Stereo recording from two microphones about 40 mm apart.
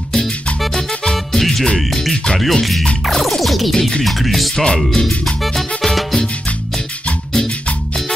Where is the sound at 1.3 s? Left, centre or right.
Centre.